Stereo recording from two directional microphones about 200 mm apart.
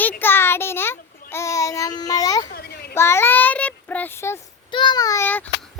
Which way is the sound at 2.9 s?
10° left (ahead or behind).